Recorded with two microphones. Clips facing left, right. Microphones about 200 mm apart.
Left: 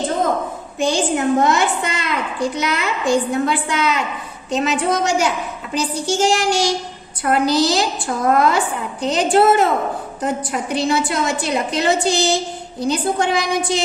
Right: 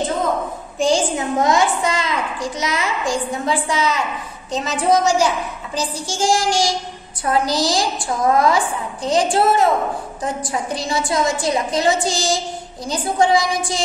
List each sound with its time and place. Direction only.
0.8 s a woman's voice: 65° left (ahead or behind)